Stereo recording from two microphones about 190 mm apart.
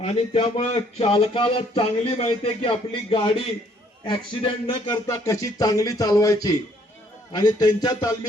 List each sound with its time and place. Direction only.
0.0 s speech: 30° left (ahead or behind)
5.2 s speech: 15° left (ahead or behind)